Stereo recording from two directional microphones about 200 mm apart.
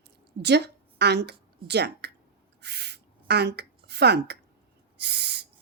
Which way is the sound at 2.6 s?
55° right (ahead or behind).